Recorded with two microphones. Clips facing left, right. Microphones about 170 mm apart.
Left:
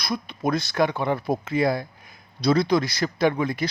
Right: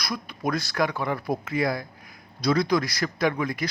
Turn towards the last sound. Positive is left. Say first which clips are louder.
# left 3 dB
turn(degrees=25)  # may be behind; listen again after turning